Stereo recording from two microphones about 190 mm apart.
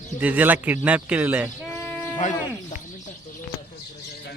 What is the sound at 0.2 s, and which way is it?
Speech, 10° right (ahead or behind).